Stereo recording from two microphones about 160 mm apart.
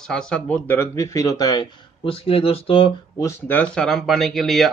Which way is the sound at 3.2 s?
15° left (ahead or behind).